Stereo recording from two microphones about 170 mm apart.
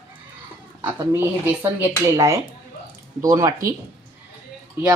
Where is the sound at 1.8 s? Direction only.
15° right (ahead or behind).